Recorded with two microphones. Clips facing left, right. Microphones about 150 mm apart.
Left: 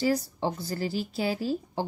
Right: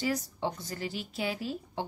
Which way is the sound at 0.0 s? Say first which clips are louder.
Left 5 dB; 35° left (ahead or behind).